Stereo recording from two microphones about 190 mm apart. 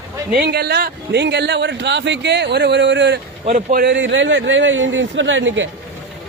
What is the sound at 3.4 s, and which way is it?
Speech, 45° right (ahead or behind).